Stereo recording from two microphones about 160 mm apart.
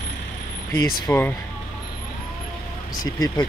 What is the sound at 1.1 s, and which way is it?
Speech, 10° left (ahead or behind).